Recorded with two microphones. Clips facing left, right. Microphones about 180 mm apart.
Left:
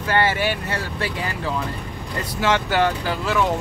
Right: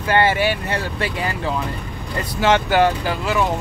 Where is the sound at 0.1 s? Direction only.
15° right (ahead or behind).